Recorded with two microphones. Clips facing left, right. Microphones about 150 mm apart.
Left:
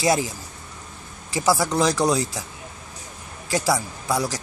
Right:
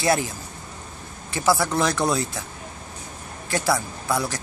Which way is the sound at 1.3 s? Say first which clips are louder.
Left 1 dB; 15° left (ahead or behind).